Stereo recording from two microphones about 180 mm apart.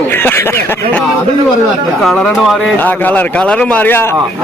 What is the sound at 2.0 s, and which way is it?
Speech, centre (ahead or behind).